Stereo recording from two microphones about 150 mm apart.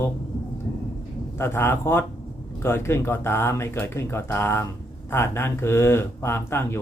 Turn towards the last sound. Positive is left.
turn(degrees=15)  # may be behind; listen again after turning